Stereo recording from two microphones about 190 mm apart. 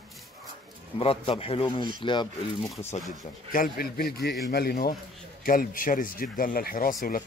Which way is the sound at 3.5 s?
50° left (ahead or behind).